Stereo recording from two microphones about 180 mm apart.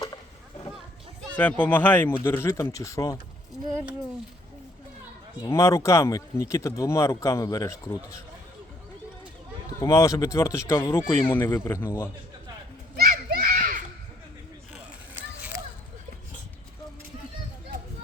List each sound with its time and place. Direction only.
1.4 s speech: 10° left (ahead or behind)
5.4 s speech: 15° left (ahead or behind)
9.8 s speech: 15° left (ahead or behind)
13.0 s children playing: 55° right (ahead or behind)